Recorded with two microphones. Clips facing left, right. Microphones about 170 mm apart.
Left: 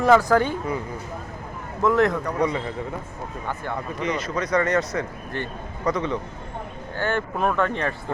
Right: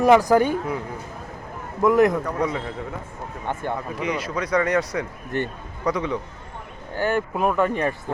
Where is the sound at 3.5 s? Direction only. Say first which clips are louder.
Right 4 dB; 25° right (ahead or behind).